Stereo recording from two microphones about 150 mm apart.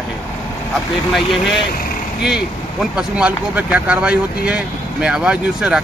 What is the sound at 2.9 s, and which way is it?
Speech, 10° right (ahead or behind).